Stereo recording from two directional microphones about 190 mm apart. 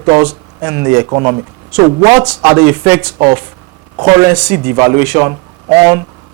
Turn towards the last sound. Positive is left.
turn(degrees=-20)  # may be behind; listen again after turning